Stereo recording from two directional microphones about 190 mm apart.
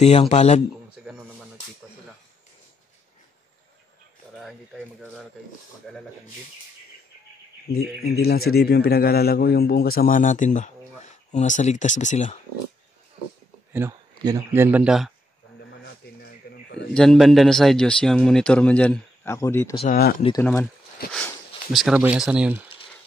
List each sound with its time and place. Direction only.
0.0 s speech: 35° left (ahead or behind)
0.9 s a sound: 5° right (ahead or behind)
4.4 s a sound: centre (ahead or behind)
5.9 s speech: centre (ahead or behind)
7.7 s a man's voice: 55° left (ahead or behind); by 12.4 s 40° left (ahead or behind)
13.7 s speech: 15° right (ahead or behind)
15.8 s a sound: 60° left (ahead or behind)
16.9 s speech: centre (ahead or behind)
19.9 s a man's voice: 50° left (ahead or behind)
21.7 s speech: 5° right (ahead or behind)